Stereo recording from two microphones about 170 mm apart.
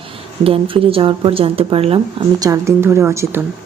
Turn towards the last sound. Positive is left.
turn(degrees=-15)  # may be behind; listen again after turning